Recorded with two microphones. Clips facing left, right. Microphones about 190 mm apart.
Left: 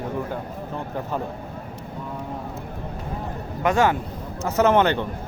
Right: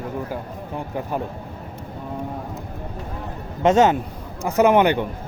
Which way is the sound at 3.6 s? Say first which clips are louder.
Right 4 dB; 20° right (ahead or behind).